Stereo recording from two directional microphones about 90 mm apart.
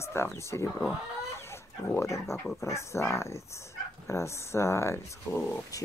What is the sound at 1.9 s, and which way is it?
Speech, 30° left (ahead or behind).